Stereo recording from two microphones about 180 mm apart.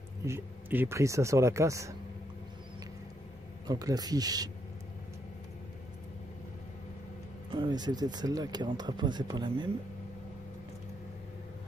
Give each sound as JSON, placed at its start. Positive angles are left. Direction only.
{"t": 0.2, "sound": "speech", "side_deg": -15}
{"t": 3.6, "sound": "speech", "side_deg": -20}
{"t": 7.5, "sound": "speech", "side_deg": -25}